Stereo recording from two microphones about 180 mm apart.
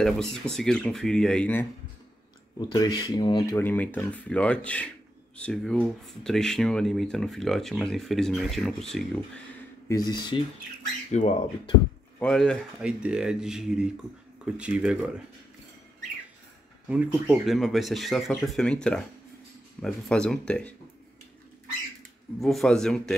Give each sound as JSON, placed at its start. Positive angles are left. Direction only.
{"t": 0.0, "sound": "speech", "side_deg": 0}
{"t": 2.7, "sound": "speech", "side_deg": 20}
{"t": 3.5, "sound": "speech", "side_deg": 10}
{"t": 9.8, "sound": "speech", "side_deg": 20}
{"t": 11.1, "sound": "speech", "side_deg": 35}
{"t": 12.2, "sound": "speech", "side_deg": 5}
{"t": 16.8, "sound": "speech", "side_deg": -5}
{"t": 22.4, "sound": "speech", "side_deg": 0}